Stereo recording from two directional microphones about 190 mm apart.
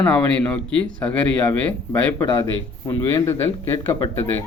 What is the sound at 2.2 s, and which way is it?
Speech, 20° left (ahead or behind).